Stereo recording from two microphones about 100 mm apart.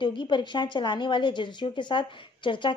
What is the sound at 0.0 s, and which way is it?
A woman's voice, 55° left (ahead or behind).